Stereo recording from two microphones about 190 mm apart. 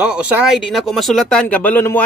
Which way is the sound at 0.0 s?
5° right (ahead or behind).